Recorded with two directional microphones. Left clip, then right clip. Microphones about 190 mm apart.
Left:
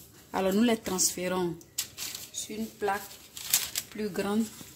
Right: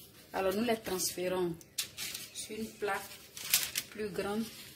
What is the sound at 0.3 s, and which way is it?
Speech, 55° left (ahead or behind).